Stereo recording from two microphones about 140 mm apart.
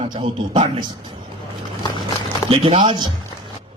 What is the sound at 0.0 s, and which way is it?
A man's voice, 35° right (ahead or behind).